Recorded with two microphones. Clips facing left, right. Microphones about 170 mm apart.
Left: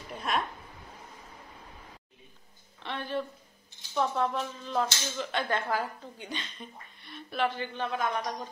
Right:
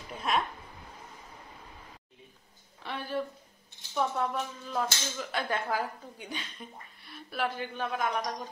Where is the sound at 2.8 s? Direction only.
10° right (ahead or behind).